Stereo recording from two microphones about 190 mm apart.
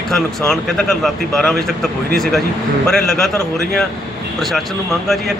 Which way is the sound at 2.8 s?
Centre (ahead or behind).